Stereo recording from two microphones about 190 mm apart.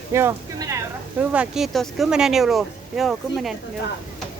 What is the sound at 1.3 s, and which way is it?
Speech, 5° right (ahead or behind).